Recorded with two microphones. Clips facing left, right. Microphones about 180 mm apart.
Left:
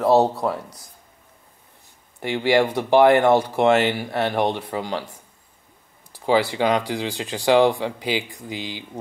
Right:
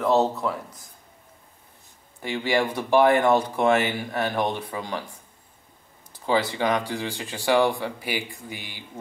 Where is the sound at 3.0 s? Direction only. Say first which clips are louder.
Left 4 dB; 70° left (ahead or behind).